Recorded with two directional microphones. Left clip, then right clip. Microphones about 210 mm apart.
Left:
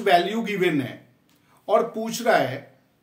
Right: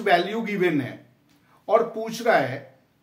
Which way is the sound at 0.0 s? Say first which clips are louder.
Left 1 dB; 15° left (ahead or behind).